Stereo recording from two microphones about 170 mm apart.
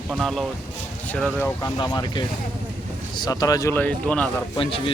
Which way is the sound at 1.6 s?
25° left (ahead or behind).